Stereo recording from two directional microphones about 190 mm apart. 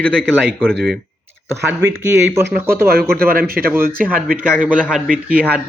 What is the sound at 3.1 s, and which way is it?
Speech, 50° right (ahead or behind).